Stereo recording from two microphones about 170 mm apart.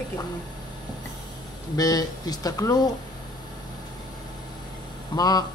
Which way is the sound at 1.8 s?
20° left (ahead or behind).